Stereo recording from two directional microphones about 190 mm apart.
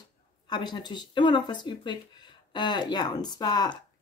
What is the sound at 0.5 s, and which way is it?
Speech, 25° left (ahead or behind).